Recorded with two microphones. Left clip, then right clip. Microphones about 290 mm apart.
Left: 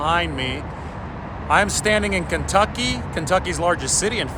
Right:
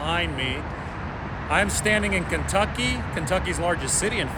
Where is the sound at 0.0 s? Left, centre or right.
Centre.